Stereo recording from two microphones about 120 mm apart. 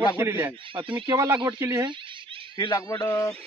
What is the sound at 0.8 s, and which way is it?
Speech, 45° right (ahead or behind).